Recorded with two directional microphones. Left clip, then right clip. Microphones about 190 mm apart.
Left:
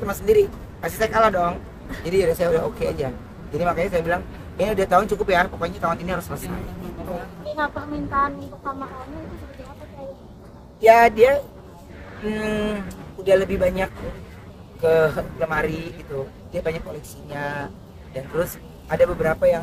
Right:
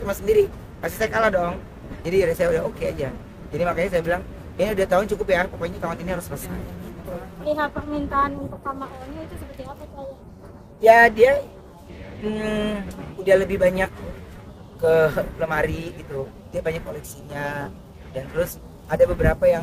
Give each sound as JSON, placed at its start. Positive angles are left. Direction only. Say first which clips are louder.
{"t": 0.0, "sound": "speech", "louder": "left 1 dB", "side_deg": 0}
{"t": 7.5, "sound": "a woman's voice", "louder": "left 2 dB", "side_deg": -50}
{"t": 10.8, "sound": "speech", "louder": "even", "side_deg": 5}